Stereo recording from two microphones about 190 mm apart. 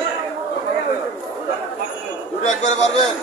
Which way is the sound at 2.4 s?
40° left (ahead or behind).